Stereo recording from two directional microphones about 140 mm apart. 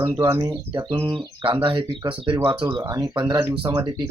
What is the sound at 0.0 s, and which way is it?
A woman's voice, 20° right (ahead or behind).